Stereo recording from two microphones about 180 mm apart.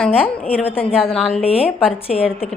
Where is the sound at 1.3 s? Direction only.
35° left (ahead or behind).